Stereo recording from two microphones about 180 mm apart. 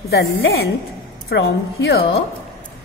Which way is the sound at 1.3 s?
60° left (ahead or behind).